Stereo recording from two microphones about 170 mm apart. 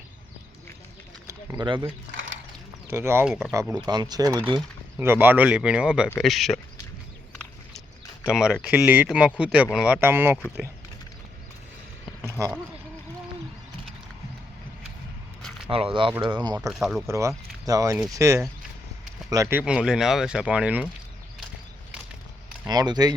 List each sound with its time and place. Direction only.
1.5 s speech: 30° right (ahead or behind)
2.8 s speech: 15° right (ahead or behind)
3.2 s speech: 5° right (ahead or behind)
3.5 s speech: 20° right (ahead or behind); by 6.6 s centre (ahead or behind)
8.2 s speech: 5° right (ahead or behind)
15.4 s a sound: 5° left (ahead or behind)
15.7 s speech: 30° right (ahead or behind)
16.6 s speech: centre (ahead or behind)
17.1 s speech: 15° right (ahead or behind)
22.6 s speech: 25° right (ahead or behind)